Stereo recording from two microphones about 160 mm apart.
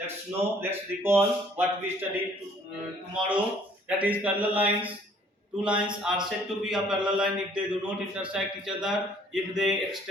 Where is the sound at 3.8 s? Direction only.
10° right (ahead or behind).